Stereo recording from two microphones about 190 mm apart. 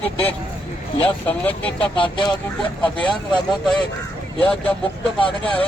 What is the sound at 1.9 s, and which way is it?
Speech, 25° left (ahead or behind).